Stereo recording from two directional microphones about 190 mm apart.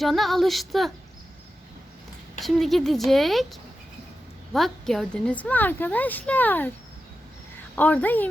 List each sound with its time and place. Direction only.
0.0 s a woman's voice: centre (ahead or behind)
2.4 s a woman's voice: centre (ahead or behind)
7.8 s a woman's voice: 10° left (ahead or behind)